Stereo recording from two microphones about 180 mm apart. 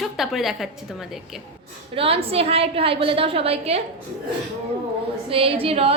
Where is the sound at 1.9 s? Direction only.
30° right (ahead or behind).